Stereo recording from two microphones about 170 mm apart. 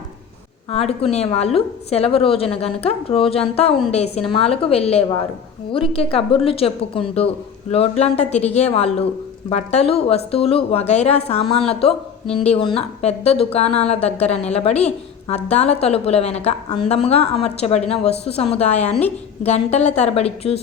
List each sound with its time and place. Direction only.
0.7 s speech: 35° left (ahead or behind)